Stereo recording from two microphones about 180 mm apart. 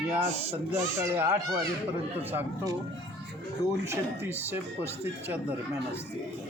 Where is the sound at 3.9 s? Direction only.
10° right (ahead or behind).